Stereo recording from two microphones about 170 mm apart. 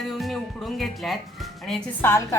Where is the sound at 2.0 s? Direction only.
15° left (ahead or behind).